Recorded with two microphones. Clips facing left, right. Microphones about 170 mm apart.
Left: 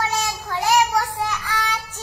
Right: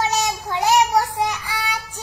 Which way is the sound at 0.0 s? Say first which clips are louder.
Right 3 dB; 20° right (ahead or behind).